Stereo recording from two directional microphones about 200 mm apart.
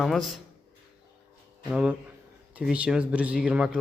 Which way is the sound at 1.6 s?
5° right (ahead or behind).